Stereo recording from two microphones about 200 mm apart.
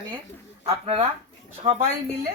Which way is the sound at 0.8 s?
30° right (ahead or behind).